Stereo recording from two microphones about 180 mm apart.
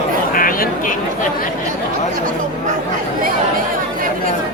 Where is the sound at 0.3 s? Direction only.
50° left (ahead or behind).